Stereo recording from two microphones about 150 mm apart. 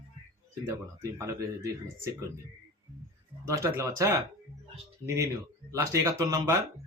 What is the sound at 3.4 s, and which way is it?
Speech, 20° right (ahead or behind).